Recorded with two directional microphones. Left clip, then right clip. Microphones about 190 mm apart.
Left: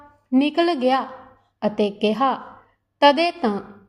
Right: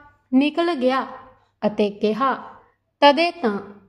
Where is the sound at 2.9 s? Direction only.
Centre (ahead or behind).